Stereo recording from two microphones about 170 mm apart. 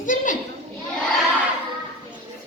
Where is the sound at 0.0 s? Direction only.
50° left (ahead or behind).